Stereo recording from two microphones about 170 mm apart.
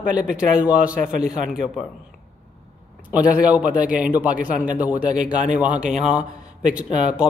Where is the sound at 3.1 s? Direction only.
10° right (ahead or behind).